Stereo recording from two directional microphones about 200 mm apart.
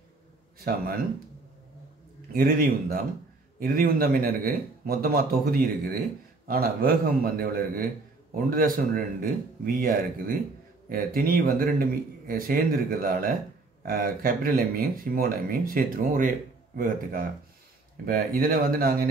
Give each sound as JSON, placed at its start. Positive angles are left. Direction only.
{"t": 0.7, "sound": "speech", "side_deg": -45}
{"t": 2.3, "sound": "speech", "side_deg": -45}